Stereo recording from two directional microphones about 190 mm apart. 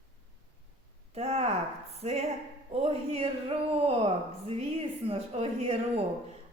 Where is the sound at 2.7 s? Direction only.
30° right (ahead or behind).